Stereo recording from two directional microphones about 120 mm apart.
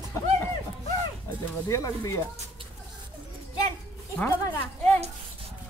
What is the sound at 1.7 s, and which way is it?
Speech, 25° left (ahead or behind).